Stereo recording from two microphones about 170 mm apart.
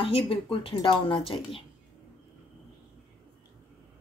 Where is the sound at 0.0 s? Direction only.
30° left (ahead or behind).